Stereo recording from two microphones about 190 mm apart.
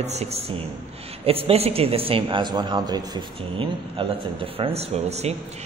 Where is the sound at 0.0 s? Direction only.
35° right (ahead or behind).